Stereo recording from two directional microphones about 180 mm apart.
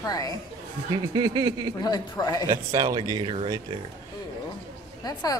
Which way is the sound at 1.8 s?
20° left (ahead or behind).